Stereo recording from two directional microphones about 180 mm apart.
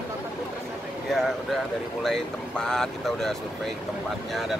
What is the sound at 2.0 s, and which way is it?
Speech, centre (ahead or behind).